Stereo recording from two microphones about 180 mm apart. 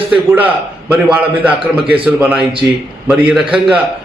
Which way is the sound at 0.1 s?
10° right (ahead or behind).